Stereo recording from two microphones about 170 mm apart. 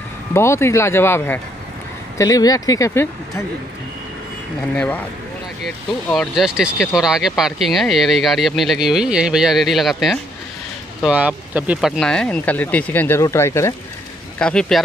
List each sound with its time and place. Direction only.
0.3 s speech: 15° left (ahead or behind)
4.7 s speech: 5° left (ahead or behind)
6.0 s speech: centre (ahead or behind)
12.0 s speech: 5° left (ahead or behind)
14.4 s speech: 5° left (ahead or behind)